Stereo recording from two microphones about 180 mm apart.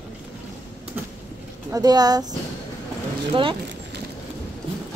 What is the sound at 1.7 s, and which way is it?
Speech, 20° right (ahead or behind).